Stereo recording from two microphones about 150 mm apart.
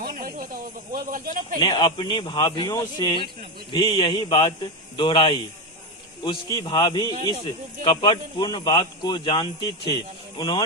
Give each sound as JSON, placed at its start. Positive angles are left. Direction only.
{"t": 0.0, "sound": "snake", "side_deg": -75}
{"t": 0.9, "sound": "speech", "side_deg": -70}
{"t": 1.5, "sound": "a man's voice", "side_deg": 30}
{"t": 3.9, "sound": "speech", "side_deg": 35}